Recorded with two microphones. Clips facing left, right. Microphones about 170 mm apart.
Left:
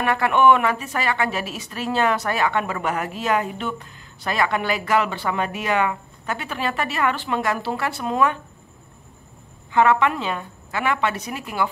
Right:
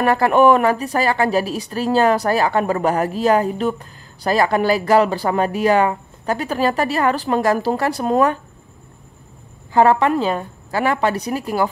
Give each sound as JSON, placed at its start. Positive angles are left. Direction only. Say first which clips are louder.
{"t": 0.0, "sound": "speech", "louder": "right 4 dB", "side_deg": -35}
{"t": 9.7, "sound": "speech", "louder": "right 4 dB", "side_deg": -35}